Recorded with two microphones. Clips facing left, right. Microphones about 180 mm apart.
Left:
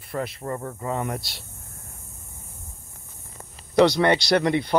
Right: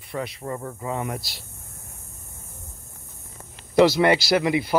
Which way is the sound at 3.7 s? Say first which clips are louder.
Right 1 dB; 5° right (ahead or behind).